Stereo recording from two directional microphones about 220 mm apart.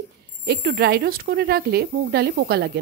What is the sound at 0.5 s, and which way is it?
A woman's voice, 50° right (ahead or behind).